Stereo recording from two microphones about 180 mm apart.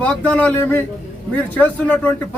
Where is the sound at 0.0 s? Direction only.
5° left (ahead or behind).